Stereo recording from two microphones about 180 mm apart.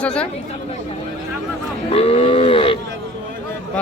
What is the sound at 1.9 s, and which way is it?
Livestock, 35° left (ahead or behind).